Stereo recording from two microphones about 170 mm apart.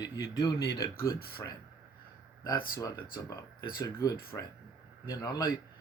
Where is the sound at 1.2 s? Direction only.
65° left (ahead or behind).